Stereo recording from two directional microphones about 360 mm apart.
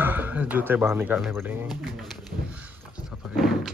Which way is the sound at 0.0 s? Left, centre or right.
Centre.